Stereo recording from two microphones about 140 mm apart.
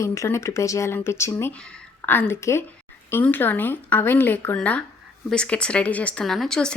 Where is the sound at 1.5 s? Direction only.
5° left (ahead or behind).